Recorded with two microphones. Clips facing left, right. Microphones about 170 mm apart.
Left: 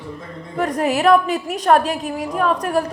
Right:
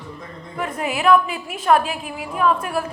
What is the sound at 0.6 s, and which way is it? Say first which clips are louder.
A woman's voice: left 6 dB; 40° left (ahead or behind).